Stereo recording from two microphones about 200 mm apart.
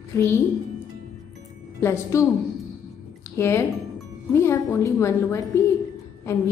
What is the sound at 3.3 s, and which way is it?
A woman's voice, 10° left (ahead or behind).